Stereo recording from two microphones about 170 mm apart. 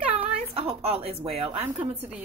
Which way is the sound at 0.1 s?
35° right (ahead or behind).